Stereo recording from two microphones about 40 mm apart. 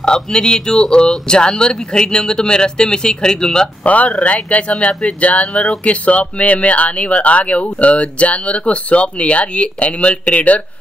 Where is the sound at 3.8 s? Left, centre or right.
Left.